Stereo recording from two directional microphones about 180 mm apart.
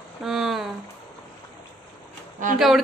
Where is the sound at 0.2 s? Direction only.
Centre (ahead or behind).